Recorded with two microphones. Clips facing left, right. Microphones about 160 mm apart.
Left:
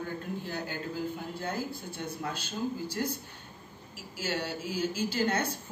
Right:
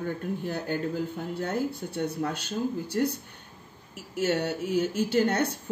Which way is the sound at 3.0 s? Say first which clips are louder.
Right 8 dB; 50° right (ahead or behind).